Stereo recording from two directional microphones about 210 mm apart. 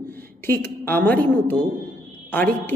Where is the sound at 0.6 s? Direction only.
10° left (ahead or behind).